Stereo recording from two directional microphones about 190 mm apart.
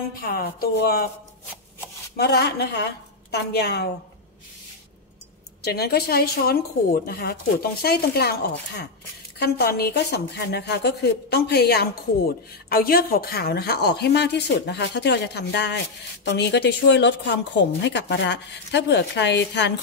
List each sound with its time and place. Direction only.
0.2 s speech: 55° left (ahead or behind)
2.1 s speech: 55° left (ahead or behind)
5.6 s speech: 55° left (ahead or behind)